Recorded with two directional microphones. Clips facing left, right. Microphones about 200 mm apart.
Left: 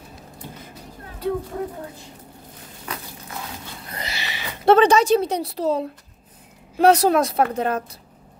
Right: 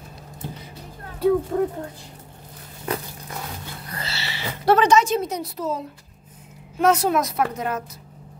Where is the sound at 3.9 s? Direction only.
15° left (ahead or behind).